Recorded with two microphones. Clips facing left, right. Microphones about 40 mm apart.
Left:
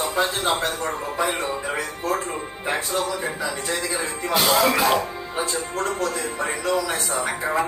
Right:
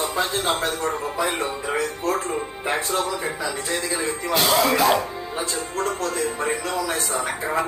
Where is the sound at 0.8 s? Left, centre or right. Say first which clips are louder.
Right 1 dB; left.